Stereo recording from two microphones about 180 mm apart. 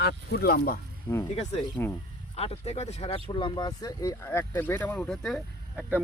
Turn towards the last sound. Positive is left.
turn(degrees=0)  # may be behind; listen again after turning